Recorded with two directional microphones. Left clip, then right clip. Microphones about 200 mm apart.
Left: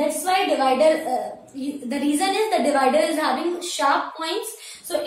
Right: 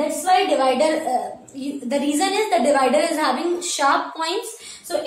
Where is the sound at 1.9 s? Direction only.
20° right (ahead or behind).